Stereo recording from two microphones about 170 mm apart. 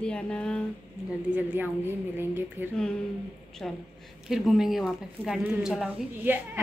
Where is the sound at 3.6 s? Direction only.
5° left (ahead or behind).